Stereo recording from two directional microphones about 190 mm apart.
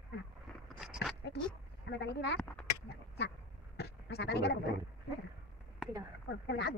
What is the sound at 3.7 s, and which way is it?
Sheep, 60° left (ahead or behind).